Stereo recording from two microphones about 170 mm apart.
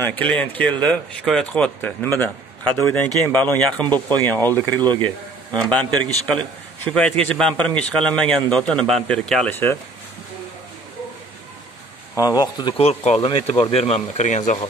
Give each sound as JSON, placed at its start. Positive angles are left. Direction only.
{"t": 0.0, "sound": "speech", "side_deg": 10}
{"t": 3.8, "sound": "speech", "side_deg": -25}
{"t": 4.3, "sound": "speech", "side_deg": 10}
{"t": 12.2, "sound": "speech", "side_deg": 25}